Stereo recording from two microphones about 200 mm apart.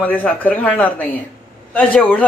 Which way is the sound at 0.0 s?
5° left (ahead or behind).